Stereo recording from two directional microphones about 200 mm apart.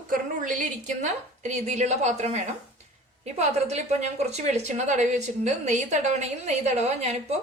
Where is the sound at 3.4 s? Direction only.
35° right (ahead or behind).